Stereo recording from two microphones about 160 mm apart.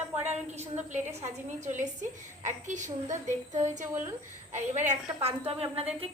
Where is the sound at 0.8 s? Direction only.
50° right (ahead or behind).